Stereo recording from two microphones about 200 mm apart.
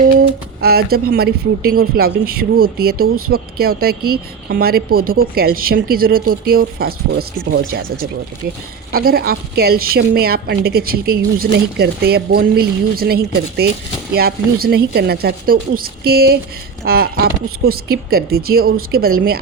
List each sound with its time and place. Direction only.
0.6 s a woman's voice: 50° right (ahead or behind)